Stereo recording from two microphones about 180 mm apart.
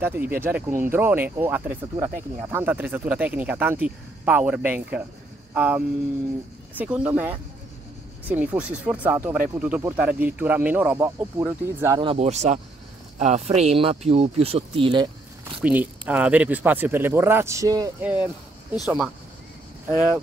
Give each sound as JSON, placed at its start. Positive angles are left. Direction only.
{"t": 0.0, "sound": "speech", "side_deg": -10}
{"t": 12.0, "sound": "speech", "side_deg": -35}
{"t": 15.6, "sound": "speech", "side_deg": -10}
{"t": 18.0, "sound": "speech", "side_deg": -10}